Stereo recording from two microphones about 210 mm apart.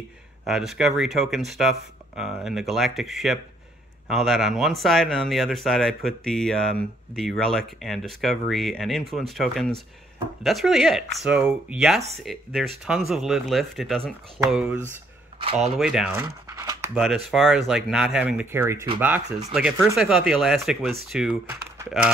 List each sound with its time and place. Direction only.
0.5 s speech: centre (ahead or behind)
16.9 s speech: centre (ahead or behind)